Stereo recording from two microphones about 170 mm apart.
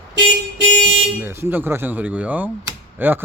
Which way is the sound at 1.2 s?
15° right (ahead or behind).